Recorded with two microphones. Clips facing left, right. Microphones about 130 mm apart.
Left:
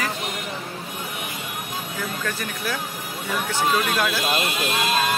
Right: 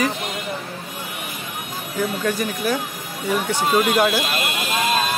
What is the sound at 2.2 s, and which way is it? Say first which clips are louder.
Speech: right 6 dB; 20° right (ahead or behind).